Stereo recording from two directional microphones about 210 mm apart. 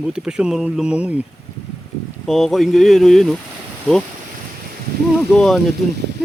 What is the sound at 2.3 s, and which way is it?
Speech, centre (ahead or behind).